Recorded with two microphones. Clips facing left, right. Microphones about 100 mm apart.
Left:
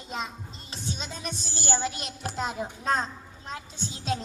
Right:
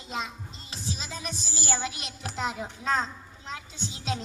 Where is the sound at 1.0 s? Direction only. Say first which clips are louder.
Left 1 dB; 35° left (ahead or behind).